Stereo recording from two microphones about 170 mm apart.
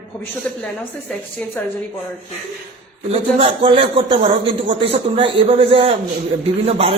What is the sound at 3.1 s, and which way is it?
A man's voice, 35° right (ahead or behind).